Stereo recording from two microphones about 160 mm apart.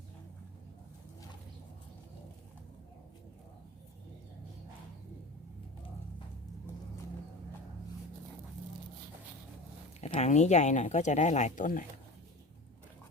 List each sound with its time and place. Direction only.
10.0 s speech: 40° left (ahead or behind)